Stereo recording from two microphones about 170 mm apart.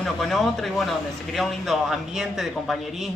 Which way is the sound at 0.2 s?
Centre (ahead or behind).